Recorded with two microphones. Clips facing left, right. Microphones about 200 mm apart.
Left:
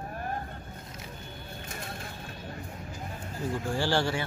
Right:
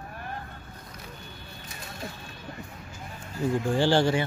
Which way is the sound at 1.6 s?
50° left (ahead or behind).